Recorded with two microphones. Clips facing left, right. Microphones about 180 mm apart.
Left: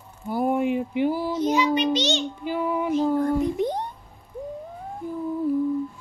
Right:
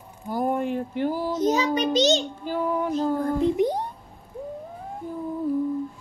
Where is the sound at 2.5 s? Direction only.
5° left (ahead or behind).